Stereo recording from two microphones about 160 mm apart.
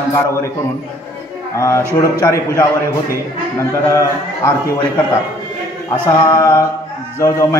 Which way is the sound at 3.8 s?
20° left (ahead or behind).